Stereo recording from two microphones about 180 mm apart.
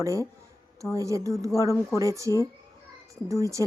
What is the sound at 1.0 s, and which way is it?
Speech, 15° right (ahead or behind).